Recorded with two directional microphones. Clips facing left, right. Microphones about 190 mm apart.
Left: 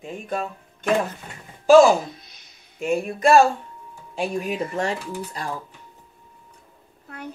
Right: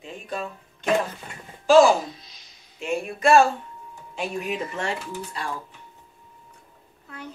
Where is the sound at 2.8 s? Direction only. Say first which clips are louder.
Left 2 dB; 40° left (ahead or behind).